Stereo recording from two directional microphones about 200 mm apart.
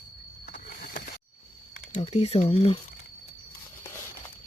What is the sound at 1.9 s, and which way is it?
Speech, 35° left (ahead or behind).